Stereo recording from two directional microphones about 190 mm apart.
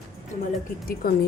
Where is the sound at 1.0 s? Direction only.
50° left (ahead or behind).